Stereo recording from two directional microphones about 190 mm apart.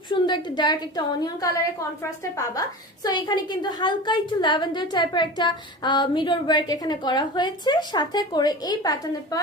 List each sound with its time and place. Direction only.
0.1 s a woman's voice: 25° left (ahead or behind)
3.0 s a woman's voice: 20° left (ahead or behind)